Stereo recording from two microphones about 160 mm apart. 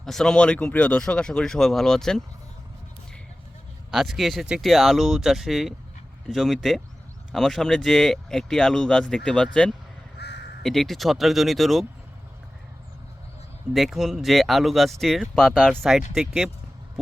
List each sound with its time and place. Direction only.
0.0 s speech: 5° left (ahead or behind)
3.9 s speech: centre (ahead or behind)
10.2 s crow: 90° left
10.6 s speech: centre (ahead or behind)
13.7 s speech: centre (ahead or behind)